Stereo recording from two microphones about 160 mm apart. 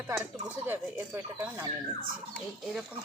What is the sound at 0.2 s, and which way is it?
Speech, 10° right (ahead or behind).